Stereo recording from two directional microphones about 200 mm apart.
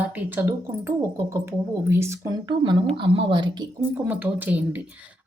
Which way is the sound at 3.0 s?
25° right (ahead or behind).